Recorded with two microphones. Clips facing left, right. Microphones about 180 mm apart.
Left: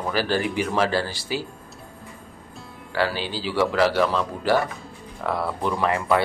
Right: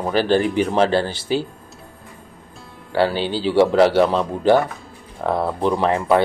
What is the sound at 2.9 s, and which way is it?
A man's voice, 30° right (ahead or behind).